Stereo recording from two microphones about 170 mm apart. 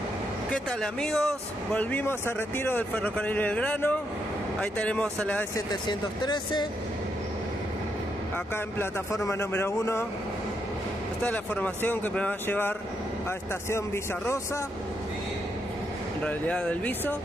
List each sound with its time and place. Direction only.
0.5 s speech: 5° left (ahead or behind)
5.7 s speech: 25° left (ahead or behind)
8.7 s speech: 15° left (ahead or behind)
11.2 s speech: 10° left (ahead or behind)
16.2 s speech: 10° left (ahead or behind)